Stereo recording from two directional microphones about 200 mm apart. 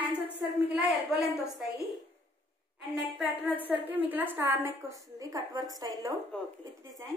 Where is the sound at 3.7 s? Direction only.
10° right (ahead or behind).